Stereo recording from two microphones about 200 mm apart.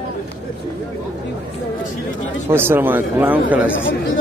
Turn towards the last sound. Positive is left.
turn(degrees=-10)  # may be behind; listen again after turning